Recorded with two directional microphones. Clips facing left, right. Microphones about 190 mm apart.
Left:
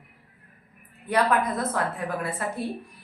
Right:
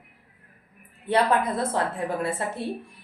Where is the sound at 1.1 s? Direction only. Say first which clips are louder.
Right 1 dB; 30° right (ahead or behind).